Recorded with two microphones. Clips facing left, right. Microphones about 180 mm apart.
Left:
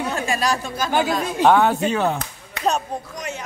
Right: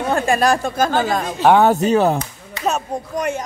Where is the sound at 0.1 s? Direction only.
55° right (ahead or behind).